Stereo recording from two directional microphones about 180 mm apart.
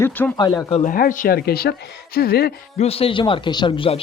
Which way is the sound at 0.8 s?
50° left (ahead or behind).